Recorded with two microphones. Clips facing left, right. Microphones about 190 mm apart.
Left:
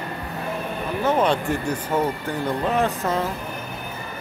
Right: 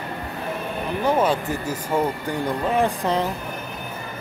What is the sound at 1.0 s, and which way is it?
Speech, 5° right (ahead or behind).